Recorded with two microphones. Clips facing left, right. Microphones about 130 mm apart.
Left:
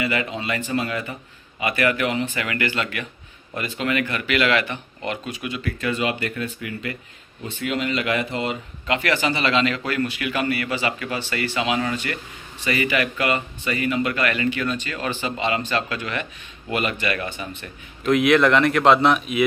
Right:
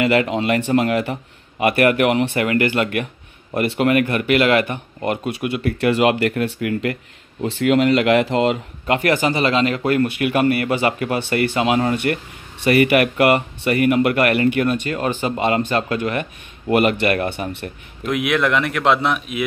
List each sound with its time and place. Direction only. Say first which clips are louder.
0.0 s speech: right 8 dB; 70° right (ahead or behind)
1.6 s speech: right 6 dB; 60° right (ahead or behind)
2.4 s a man's voice: right 7 dB; 45° right (ahead or behind)
3.5 s speech: right 8 dB; 65° right (ahead or behind); by 8.5 s 90° right
8.8 s a man's voice: right 5 dB; 50° right (ahead or behind); by 17.6 s 65° right (ahead or behind)
18.0 s a man's voice: left 3 dB; 10° right (ahead or behind)